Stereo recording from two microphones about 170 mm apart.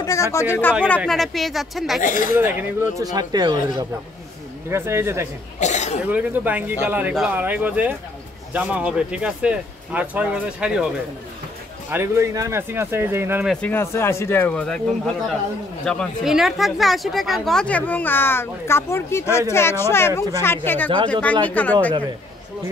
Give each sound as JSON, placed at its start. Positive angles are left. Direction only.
{"t": 0.0, "sound": "speech", "side_deg": 20}
{"t": 1.0, "sound": "speech", "side_deg": 0}
{"t": 2.0, "sound": "speech", "side_deg": 50}
{"t": 2.3, "sound": "speech", "side_deg": -10}
{"t": 3.0, "sound": "speech", "side_deg": -25}
{"t": 5.6, "sound": "cough", "side_deg": 45}
{"t": 6.0, "sound": "speech", "side_deg": -10}
{"t": 11.9, "sound": "speech", "side_deg": -15}
{"t": 13.5, "sound": "speech", "side_deg": 10}
{"t": 15.8, "sound": "speech", "side_deg": 5}